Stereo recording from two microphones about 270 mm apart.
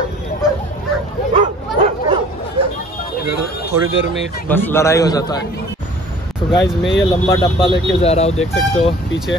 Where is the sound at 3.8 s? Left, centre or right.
Right.